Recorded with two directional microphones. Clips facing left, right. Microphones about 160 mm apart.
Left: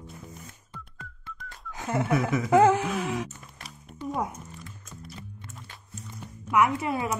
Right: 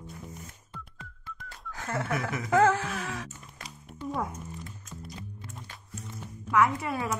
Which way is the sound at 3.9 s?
5° left (ahead or behind).